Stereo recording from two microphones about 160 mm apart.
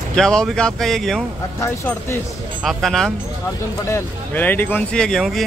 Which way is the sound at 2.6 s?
Centre (ahead or behind).